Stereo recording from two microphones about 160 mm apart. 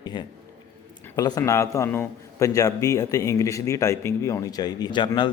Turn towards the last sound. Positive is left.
turn(degrees=30)  # may be behind; listen again after turning